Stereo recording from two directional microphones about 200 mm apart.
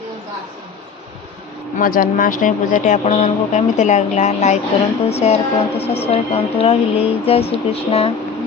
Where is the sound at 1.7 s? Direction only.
45° left (ahead or behind); by 8.1 s 30° left (ahead or behind).